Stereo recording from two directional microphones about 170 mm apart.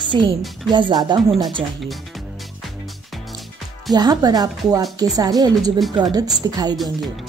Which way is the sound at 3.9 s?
25° right (ahead or behind).